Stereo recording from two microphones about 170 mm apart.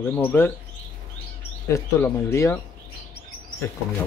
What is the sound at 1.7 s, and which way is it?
Speech, 15° left (ahead or behind).